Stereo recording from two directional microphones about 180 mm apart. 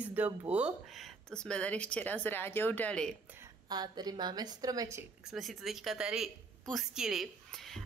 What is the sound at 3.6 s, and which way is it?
A woman's voice, 25° right (ahead or behind).